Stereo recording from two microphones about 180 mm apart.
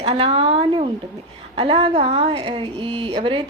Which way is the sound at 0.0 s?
30° right (ahead or behind).